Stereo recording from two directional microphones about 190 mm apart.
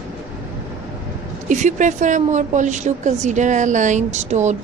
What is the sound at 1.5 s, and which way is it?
A woman's voice, 40° right (ahead or behind).